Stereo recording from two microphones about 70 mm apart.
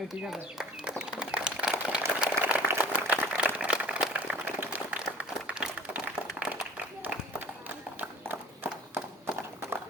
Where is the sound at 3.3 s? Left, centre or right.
Centre.